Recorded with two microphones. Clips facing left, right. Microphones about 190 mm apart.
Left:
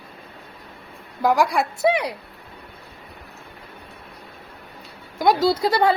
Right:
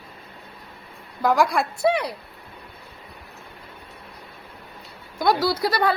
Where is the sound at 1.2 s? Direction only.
15° left (ahead or behind).